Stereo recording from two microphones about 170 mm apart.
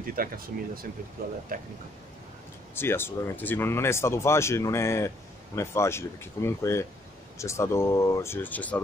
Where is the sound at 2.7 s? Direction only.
15° left (ahead or behind).